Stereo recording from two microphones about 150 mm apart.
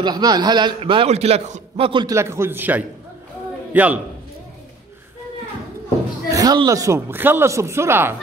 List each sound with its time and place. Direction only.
0.0 s a man's voice: 25° right (ahead or behind); by 1.9 s 45° right (ahead or behind)
1.9 s a man's voice: 30° right (ahead or behind)
2.1 s a man's voice: 15° right (ahead or behind)
6.2 s speech: 25° right (ahead or behind)